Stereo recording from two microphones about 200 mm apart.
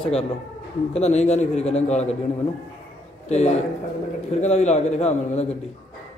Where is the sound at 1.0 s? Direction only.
35° left (ahead or behind).